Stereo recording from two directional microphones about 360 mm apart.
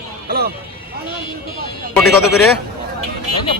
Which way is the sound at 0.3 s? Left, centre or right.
Right.